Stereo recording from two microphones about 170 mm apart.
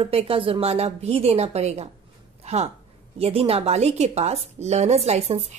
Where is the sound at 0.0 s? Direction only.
35° right (ahead or behind).